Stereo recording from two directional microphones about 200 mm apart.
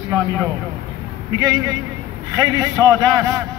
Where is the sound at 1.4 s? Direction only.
20° right (ahead or behind).